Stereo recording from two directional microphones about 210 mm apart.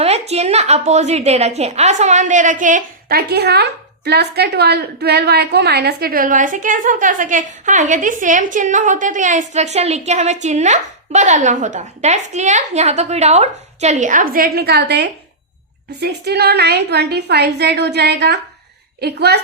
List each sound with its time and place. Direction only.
0.0 s a woman's voice: 30° right (ahead or behind); by 19.4 s 50° right (ahead or behind)